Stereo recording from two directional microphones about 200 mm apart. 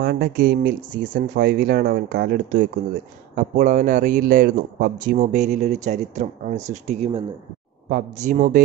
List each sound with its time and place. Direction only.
0.0 s speech: 55° right (ahead or behind)